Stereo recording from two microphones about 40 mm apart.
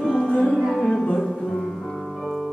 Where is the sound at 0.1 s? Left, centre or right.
Centre.